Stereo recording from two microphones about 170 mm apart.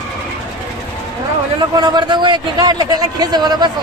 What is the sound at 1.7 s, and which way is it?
A man's voice, 25° right (ahead or behind).